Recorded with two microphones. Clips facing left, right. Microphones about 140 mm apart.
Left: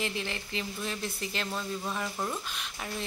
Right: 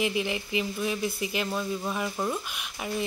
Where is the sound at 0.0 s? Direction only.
15° right (ahead or behind).